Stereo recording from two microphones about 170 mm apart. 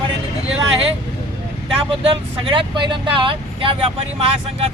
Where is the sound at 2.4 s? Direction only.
30° right (ahead or behind).